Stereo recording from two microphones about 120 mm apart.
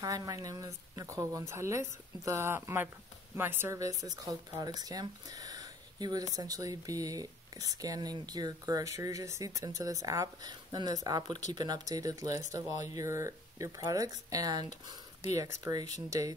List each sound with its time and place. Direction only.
0.0 s speech: 30° right (ahead or behind)